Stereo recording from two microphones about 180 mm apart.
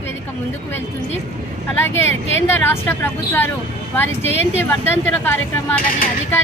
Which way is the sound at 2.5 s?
15° left (ahead or behind).